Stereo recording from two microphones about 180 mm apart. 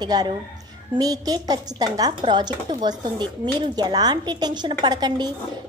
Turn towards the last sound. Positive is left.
turn(degrees=-25)  # may be behind; listen again after turning